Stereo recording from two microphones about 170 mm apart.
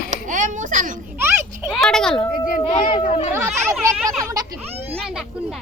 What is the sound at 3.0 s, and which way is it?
Speech, 45° left (ahead or behind).